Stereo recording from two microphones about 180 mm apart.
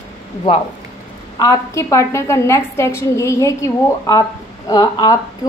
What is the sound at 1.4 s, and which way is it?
A woman's voice, 20° left (ahead or behind).